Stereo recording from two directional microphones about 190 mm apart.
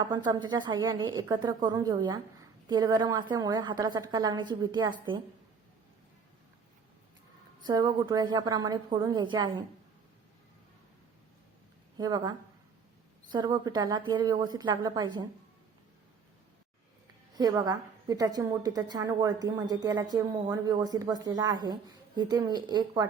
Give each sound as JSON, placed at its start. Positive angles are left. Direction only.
{"t": 0.0, "sound": "a woman's voice", "side_deg": -25}
{"t": 7.6, "sound": "a woman's voice", "side_deg": -20}
{"t": 11.9, "sound": "a woman's voice", "side_deg": -20}
{"t": 17.3, "sound": "a woman's voice", "side_deg": -20}